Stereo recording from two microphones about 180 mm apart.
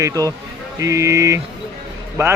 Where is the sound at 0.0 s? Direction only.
20° right (ahead or behind).